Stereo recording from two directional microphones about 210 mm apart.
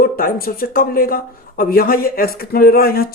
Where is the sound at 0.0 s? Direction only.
45° left (ahead or behind).